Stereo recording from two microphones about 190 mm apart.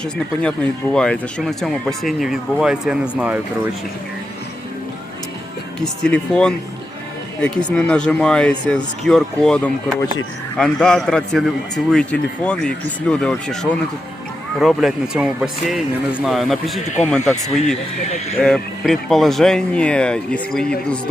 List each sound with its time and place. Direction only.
0.0 s speech: 5° left (ahead or behind)
5.8 s speech: 5° left (ahead or behind)
7.7 s speech: 5° left (ahead or behind)
17.1 s speech: 10° left (ahead or behind)
18.3 s speech: 5° left (ahead or behind)